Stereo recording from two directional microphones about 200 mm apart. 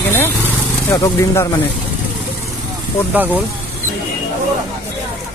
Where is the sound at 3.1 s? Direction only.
10° right (ahead or behind).